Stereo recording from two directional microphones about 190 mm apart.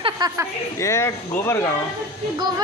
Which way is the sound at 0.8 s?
15° left (ahead or behind).